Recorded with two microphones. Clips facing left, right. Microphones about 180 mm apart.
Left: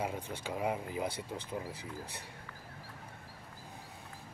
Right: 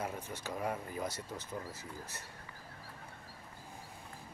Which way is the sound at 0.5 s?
15° left (ahead or behind).